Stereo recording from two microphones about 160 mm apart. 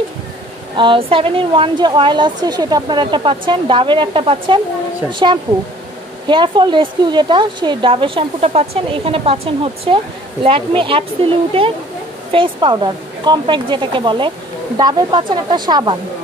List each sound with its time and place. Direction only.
0.7 s a woman's voice: 30° right (ahead or behind)